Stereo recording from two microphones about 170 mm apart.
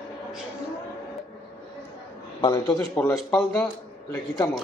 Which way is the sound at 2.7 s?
10° left (ahead or behind).